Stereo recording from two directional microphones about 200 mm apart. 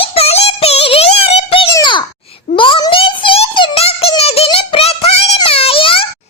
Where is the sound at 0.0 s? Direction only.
30° left (ahead or behind).